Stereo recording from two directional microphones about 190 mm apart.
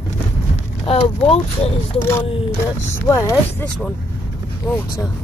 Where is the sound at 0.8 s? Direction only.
30° left (ahead or behind).